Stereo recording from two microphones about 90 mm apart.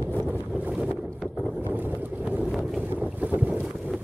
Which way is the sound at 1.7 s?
20° right (ahead or behind).